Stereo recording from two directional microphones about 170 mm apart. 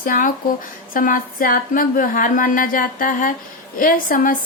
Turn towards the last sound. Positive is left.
turn(degrees=55)  # may be behind; listen again after turning